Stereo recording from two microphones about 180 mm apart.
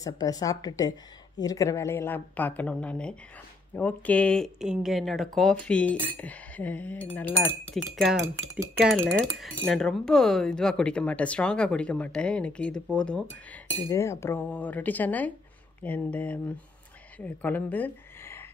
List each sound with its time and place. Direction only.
0.0 s a woman's voice: 20° left (ahead or behind)